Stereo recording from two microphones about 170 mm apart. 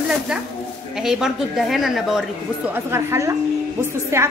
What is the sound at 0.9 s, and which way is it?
A woman's voice, 5° right (ahead or behind).